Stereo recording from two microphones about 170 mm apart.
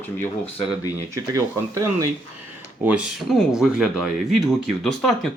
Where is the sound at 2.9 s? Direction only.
5° right (ahead or behind).